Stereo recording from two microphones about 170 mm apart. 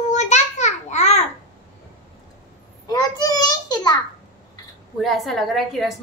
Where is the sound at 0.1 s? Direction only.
45° left (ahead or behind).